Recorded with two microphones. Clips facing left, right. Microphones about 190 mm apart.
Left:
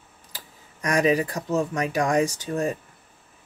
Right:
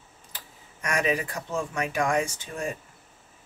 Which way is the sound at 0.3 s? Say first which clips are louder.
Left 2 dB; 35° left (ahead or behind).